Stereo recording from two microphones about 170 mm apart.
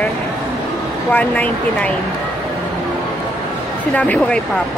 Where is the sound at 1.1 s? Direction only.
10° left (ahead or behind).